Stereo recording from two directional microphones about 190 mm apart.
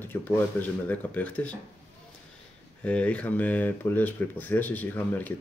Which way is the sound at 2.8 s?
5° left (ahead or behind).